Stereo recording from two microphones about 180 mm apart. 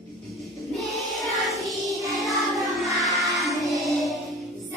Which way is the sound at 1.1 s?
Centre (ahead or behind).